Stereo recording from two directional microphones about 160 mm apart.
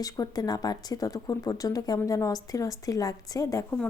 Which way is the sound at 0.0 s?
25° left (ahead or behind).